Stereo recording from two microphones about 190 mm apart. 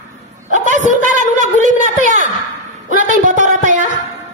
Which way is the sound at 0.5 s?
40° right (ahead or behind).